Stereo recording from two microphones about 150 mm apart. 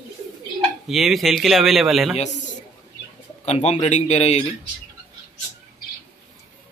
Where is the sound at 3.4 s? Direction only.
50° left (ahead or behind).